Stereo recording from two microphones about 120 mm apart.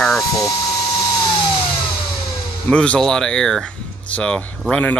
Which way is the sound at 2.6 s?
10° left (ahead or behind).